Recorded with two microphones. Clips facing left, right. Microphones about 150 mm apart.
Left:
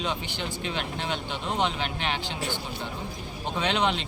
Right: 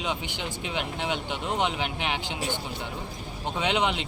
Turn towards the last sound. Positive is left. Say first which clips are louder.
# even
turn(degrees=-15)  # may be behind; listen again after turning